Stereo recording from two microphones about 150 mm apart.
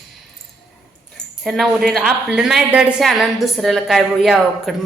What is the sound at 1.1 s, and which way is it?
A woman's voice, centre (ahead or behind).